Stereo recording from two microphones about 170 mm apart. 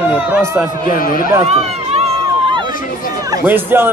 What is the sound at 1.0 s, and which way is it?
Speech, 55° left (ahead or behind).